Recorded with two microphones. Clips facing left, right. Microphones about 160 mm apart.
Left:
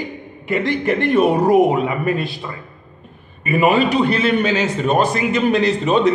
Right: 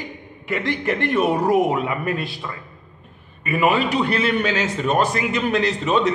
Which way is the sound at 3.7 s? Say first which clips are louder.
Left 4 dB; 35° left (ahead or behind).